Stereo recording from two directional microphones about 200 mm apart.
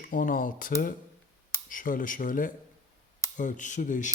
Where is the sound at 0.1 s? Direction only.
40° left (ahead or behind).